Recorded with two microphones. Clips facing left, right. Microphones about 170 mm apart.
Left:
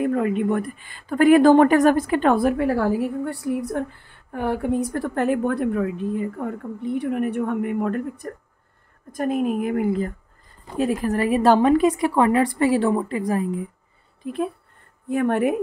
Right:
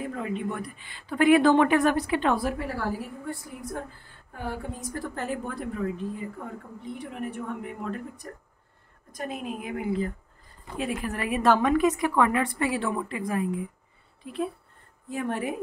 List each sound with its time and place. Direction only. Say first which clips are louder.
0.0 s a woman's voice: left 10 dB; 60° left (ahead or behind)
10.7 s a woman's voice: left 8 dB; 40° left (ahead or behind)
14.2 s speech: left 5 dB; 50° left (ahead or behind)
15.0 s a woman's voice: left 9 dB; 65° left (ahead or behind)